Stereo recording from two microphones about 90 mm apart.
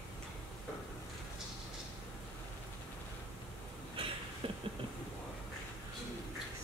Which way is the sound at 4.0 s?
80° right.